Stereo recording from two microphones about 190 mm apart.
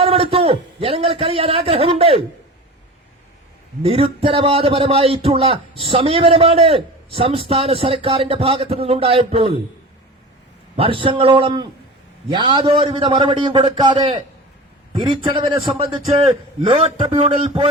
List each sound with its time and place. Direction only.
0.0 s a man's voice: 30° right (ahead or behind)
3.8 s a man's voice: 30° right (ahead or behind)
10.8 s a man's voice: 25° right (ahead or behind)